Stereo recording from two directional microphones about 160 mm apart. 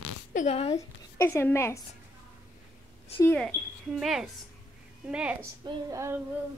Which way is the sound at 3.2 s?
10° left (ahead or behind).